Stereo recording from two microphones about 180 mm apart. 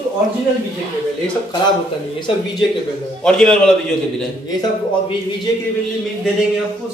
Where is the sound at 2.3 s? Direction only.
30° left (ahead or behind).